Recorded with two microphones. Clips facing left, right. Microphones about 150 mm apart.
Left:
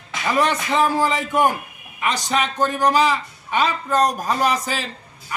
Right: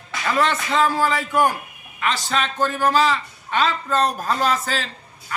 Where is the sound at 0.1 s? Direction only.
15° left (ahead or behind).